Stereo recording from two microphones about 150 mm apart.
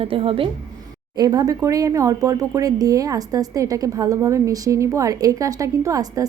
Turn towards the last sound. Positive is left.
turn(degrees=-20)  # may be behind; listen again after turning